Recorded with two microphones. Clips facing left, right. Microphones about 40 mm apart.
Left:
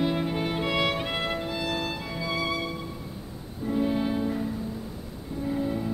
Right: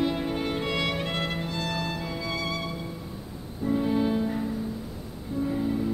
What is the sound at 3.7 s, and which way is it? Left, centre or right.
Music, centre.